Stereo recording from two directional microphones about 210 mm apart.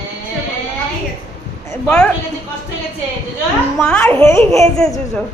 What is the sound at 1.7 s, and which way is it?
Speech, 5° left (ahead or behind).